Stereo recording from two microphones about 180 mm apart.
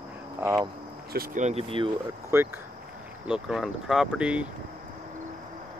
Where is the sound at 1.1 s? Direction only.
50° right (ahead or behind); by 1.8 s 30° right (ahead or behind).